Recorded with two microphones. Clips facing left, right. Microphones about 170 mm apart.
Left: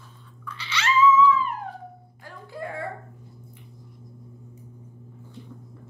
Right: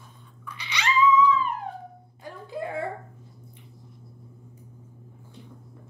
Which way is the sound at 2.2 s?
20° right (ahead or behind).